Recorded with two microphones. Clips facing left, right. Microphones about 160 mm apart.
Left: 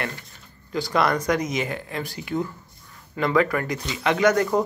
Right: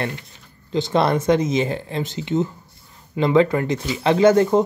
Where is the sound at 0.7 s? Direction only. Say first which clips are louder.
Right 4 dB; 25° right (ahead or behind).